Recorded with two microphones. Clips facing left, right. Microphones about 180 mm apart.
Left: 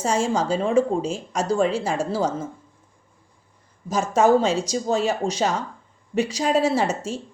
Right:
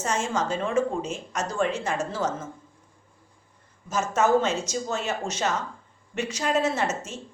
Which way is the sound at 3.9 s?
35° left (ahead or behind).